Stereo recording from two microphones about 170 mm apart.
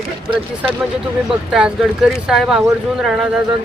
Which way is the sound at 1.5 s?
5° right (ahead or behind).